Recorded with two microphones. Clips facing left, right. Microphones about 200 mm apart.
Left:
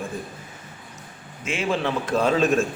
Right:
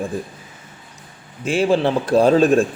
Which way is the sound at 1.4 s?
35° right (ahead or behind).